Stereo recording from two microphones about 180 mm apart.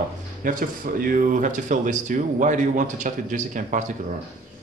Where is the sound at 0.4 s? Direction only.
50° right (ahead or behind).